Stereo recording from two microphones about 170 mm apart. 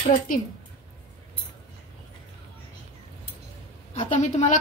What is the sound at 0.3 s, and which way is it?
Speech, 55° left (ahead or behind).